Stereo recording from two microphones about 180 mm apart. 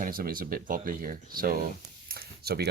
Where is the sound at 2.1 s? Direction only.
60° right (ahead or behind).